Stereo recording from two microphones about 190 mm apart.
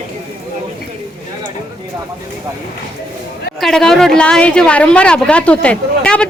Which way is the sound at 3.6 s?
Centre (ahead or behind).